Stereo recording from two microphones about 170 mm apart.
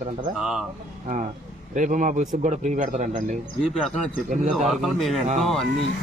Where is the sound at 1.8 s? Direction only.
50° right (ahead or behind).